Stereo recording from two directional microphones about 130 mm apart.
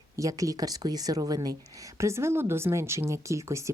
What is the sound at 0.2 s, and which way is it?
A woman's voice, 25° right (ahead or behind).